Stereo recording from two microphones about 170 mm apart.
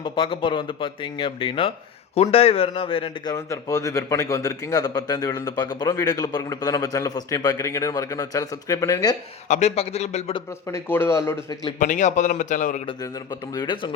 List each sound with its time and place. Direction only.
0.0 s speech: 30° left (ahead or behind)
3.3 s a man's voice: 20° left (ahead or behind)
9.5 s speech: 40° left (ahead or behind)
10.3 s a man's voice: 15° left (ahead or behind)
11.8 s a man's voice: 45° left (ahead or behind)
13.5 s a man's voice: 25° left (ahead or behind)